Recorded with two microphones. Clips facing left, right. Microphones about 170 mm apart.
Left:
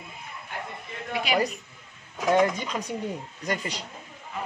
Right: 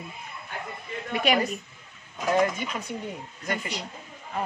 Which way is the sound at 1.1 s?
55° right (ahead or behind).